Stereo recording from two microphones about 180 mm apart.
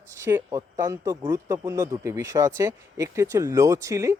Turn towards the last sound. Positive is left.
turn(degrees=-15)  # may be behind; listen again after turning